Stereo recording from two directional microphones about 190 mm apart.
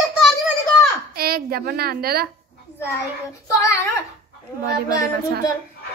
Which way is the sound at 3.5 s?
15° left (ahead or behind).